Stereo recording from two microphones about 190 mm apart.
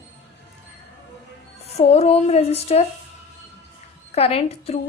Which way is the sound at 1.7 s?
35° left (ahead or behind).